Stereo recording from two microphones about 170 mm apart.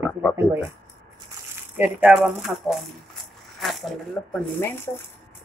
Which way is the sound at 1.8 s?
10° right (ahead or behind).